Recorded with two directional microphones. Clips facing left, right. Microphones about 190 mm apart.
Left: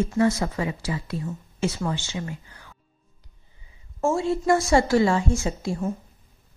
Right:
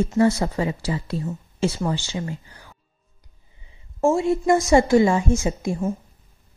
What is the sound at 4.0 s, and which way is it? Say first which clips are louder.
A woman's voice: right 4 dB; 20° right (ahead or behind).